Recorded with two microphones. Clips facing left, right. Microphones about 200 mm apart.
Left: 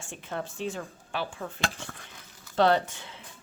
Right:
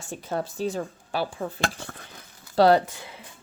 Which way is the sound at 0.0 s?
40° right (ahead or behind).